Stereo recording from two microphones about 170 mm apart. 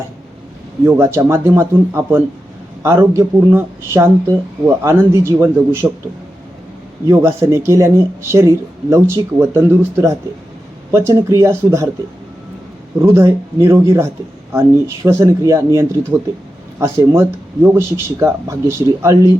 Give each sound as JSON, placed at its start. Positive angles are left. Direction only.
{"t": 0.9, "sound": "speech", "side_deg": -15}
{"t": 7.1, "sound": "speech", "side_deg": -15}
{"t": 13.0, "sound": "speech", "side_deg": -15}